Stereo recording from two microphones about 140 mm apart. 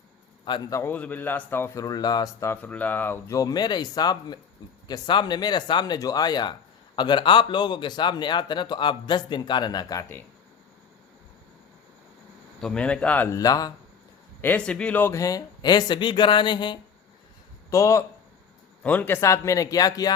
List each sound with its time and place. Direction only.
0.4 s speech: 35° left (ahead or behind)
0.8 s speech: 15° left (ahead or behind)
12.6 s speech: 10° left (ahead or behind)
13.3 s speech: 25° left (ahead or behind)
14.4 s speech: 10° left (ahead or behind); by 16.7 s 35° left (ahead or behind)
17.7 s speech: 20° left (ahead or behind)
18.8 s speech: 10° left (ahead or behind); by 20.1 s 25° left (ahead or behind)